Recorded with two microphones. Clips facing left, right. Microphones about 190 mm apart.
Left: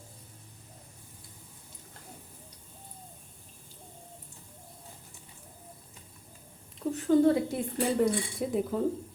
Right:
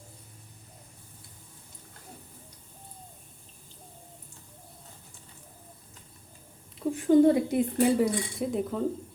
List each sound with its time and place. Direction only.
6.7 s speech: 15° right (ahead or behind)
7.9 s speech: centre (ahead or behind)